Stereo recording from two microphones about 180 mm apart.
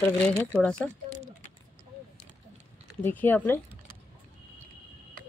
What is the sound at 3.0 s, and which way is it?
Speech, 10° left (ahead or behind).